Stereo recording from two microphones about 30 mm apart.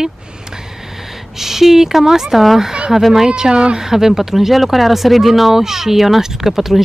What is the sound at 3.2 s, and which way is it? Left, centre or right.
Speech, right.